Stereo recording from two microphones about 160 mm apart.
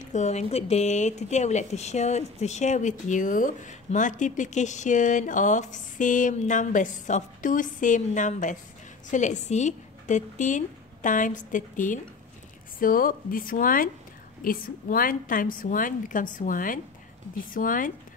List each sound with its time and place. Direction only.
0.0 s a woman's voice: 50° left (ahead or behind)